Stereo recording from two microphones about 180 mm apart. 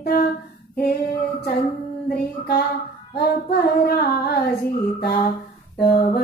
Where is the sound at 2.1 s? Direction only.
60° left (ahead or behind).